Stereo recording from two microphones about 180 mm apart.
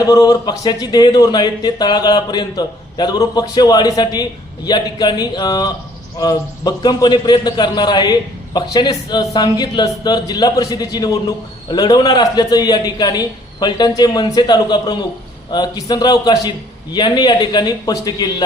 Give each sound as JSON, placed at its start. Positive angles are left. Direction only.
{"t": 0.1, "sound": "speech", "side_deg": 20}